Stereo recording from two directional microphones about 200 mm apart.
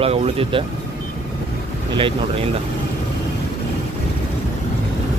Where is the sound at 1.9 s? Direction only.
25° right (ahead or behind).